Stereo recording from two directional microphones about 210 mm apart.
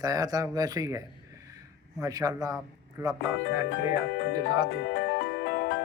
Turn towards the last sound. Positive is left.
turn(degrees=50)  # may be behind; listen again after turning